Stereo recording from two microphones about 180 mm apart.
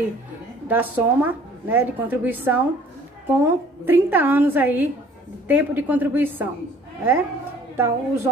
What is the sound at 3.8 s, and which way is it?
A woman's voice, 10° right (ahead or behind).